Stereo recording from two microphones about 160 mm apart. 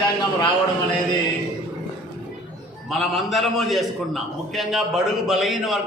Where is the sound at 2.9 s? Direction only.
Centre (ahead or behind).